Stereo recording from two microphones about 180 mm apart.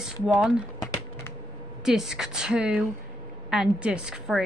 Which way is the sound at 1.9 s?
Centre (ahead or behind).